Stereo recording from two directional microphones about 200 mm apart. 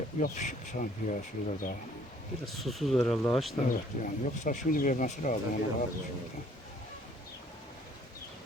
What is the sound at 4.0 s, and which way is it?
Speech, 40° left (ahead or behind).